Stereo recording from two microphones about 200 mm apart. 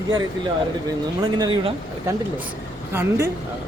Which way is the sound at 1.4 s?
25° right (ahead or behind).